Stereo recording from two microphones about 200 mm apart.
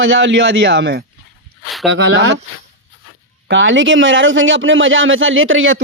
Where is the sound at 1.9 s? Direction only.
70° right (ahead or behind).